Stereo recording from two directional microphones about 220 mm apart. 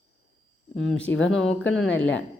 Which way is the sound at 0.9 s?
5° left (ahead or behind).